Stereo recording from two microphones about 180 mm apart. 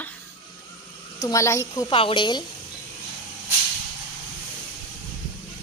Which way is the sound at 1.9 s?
30° left (ahead or behind).